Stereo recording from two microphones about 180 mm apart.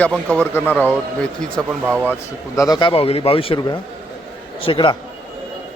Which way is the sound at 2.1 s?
20° left (ahead or behind).